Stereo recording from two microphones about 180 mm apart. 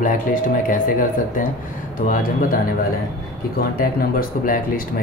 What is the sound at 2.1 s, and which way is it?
Speech, 50° left (ahead or behind).